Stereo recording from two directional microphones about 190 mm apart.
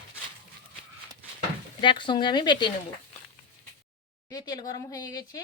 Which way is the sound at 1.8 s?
25° left (ahead or behind).